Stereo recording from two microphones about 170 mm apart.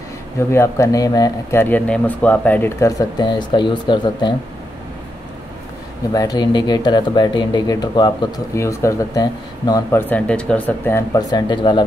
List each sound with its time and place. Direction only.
0.5 s speech: 15° left (ahead or behind)
6.1 s speech: 25° left (ahead or behind)
11.1 s speech: 25° left (ahead or behind)